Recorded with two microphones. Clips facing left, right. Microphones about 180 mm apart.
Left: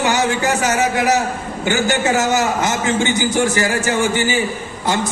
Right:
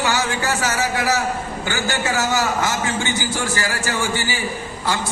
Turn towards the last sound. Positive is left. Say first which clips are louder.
# left 4 dB
turn(degrees=20)  # may be behind; listen again after turning